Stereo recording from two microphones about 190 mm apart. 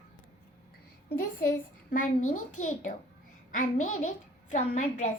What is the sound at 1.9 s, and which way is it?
A child's voice, 40° left (ahead or behind).